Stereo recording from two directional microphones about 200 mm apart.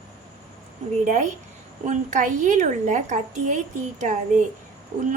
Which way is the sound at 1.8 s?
40° right (ahead or behind).